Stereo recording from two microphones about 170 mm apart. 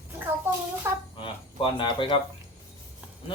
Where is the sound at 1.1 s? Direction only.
30° left (ahead or behind).